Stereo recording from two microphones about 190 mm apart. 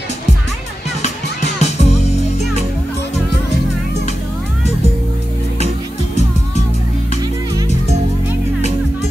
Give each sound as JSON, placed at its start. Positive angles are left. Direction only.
{"t": 1.0, "sound": "music", "side_deg": 35}